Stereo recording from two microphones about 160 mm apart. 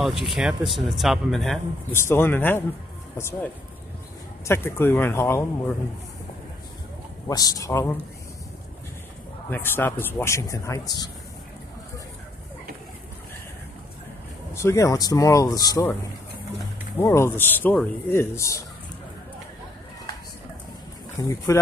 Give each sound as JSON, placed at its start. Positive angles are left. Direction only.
{"t": 0.0, "sound": "speech", "side_deg": 0}
{"t": 1.9, "sound": "a man's voice", "side_deg": 15}
{"t": 4.5, "sound": "a man's voice", "side_deg": 15}
{"t": 7.2, "sound": "speech", "side_deg": 20}
{"t": 9.5, "sound": "a man's voice", "side_deg": 15}
{"t": 14.5, "sound": "a man's voice", "side_deg": 15}
{"t": 21.2, "sound": "speech", "side_deg": 20}